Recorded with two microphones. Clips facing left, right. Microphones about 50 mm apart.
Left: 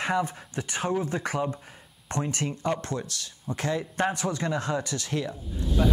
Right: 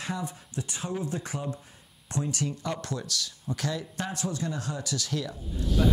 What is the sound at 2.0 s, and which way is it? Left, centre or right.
Speech, left.